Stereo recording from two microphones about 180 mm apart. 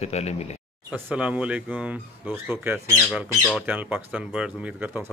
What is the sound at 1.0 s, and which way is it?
Speech, 5° right (ahead or behind).